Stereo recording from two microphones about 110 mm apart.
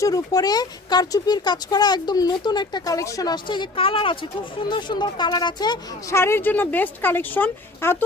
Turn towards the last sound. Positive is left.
turn(degrees=15)  # may be behind; listen again after turning